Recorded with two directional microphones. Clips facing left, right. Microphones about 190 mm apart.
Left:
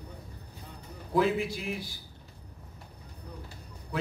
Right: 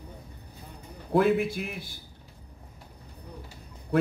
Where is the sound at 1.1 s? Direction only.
55° right (ahead or behind).